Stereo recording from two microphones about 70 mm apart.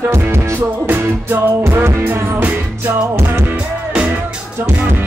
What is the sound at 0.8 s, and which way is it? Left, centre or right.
Music, right.